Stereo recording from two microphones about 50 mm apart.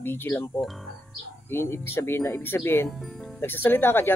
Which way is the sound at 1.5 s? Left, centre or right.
Left.